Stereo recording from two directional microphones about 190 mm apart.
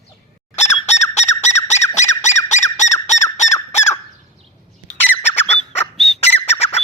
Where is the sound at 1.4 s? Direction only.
35° left (ahead or behind).